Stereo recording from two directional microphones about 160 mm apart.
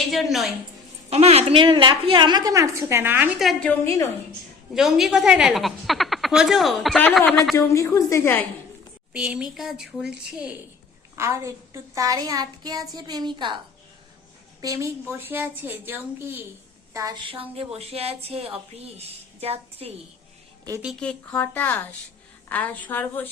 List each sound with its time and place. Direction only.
0.1 s a woman's voice: centre (ahead or behind)
1.1 s a woman's voice: 40° right (ahead or behind); by 3.3 s 10° right (ahead or behind)
3.3 s a woman's voice: centre (ahead or behind)
3.7 s a woman's voice: 15° left (ahead or behind)
4.7 s a woman's voice: centre (ahead or behind)
7.5 s a woman's voice: 20° left (ahead or behind)
9.1 s a woman's voice: 5° right (ahead or behind)
11.2 s a woman's voice: 20° right (ahead or behind)
14.6 s a woman's voice: 20° right (ahead or behind); by 20.0 s 40° right (ahead or behind)
21.0 s a woman's voice: 5° left (ahead or behind)